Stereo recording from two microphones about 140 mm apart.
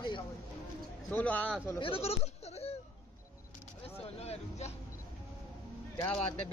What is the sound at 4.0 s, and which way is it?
Vehicle, 45° left (ahead or behind).